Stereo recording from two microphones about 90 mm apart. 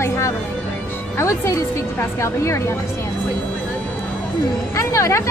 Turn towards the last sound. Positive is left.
turn(degrees=35)  # may be behind; listen again after turning